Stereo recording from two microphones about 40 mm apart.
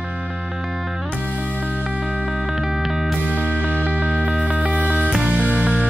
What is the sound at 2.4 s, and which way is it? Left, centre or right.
Music, centre.